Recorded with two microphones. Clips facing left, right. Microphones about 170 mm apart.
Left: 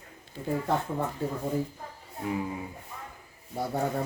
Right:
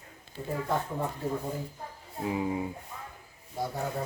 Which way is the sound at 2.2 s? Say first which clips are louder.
Right 1 dB; 20° right (ahead or behind).